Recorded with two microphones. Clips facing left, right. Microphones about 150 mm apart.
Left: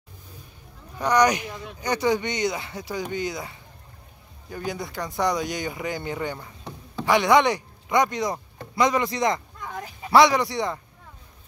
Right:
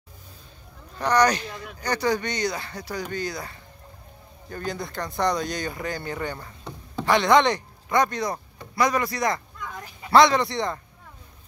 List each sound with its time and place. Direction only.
0.9 s a man's voice: 15° left (ahead or behind)